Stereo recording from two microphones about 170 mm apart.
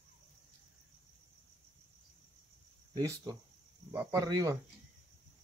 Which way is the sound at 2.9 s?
20° right (ahead or behind).